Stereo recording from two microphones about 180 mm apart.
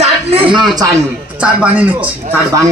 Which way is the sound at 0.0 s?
35° right (ahead or behind).